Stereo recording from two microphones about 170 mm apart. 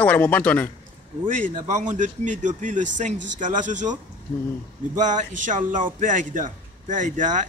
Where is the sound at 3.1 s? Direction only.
90° right.